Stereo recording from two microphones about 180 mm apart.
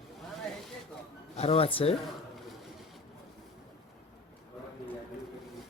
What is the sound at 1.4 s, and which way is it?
Speech, 35° left (ahead or behind).